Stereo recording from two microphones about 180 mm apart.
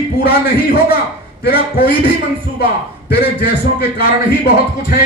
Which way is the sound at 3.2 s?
60° left (ahead or behind).